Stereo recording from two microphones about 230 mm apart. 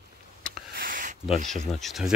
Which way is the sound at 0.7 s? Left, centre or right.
Right.